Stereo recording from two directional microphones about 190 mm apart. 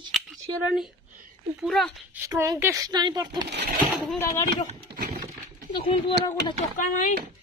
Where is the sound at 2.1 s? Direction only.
15° right (ahead or behind).